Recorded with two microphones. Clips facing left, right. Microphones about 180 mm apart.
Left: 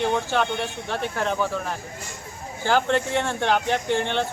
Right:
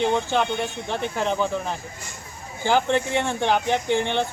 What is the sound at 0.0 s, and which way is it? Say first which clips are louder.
Speech: right 1 dB; 15° right (ahead or behind).